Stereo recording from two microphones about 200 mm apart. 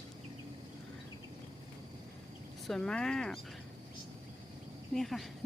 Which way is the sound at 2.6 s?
Centre (ahead or behind).